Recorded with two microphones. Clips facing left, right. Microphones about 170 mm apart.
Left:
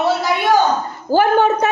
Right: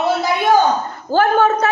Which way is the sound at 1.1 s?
15° left (ahead or behind).